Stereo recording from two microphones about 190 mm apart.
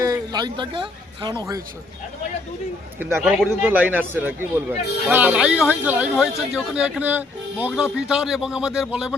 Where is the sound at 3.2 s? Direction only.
5° right (ahead or behind).